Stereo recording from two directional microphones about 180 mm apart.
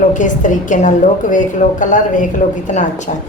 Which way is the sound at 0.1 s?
45° left (ahead or behind).